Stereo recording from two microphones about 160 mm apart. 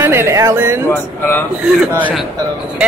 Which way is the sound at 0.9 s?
15° left (ahead or behind).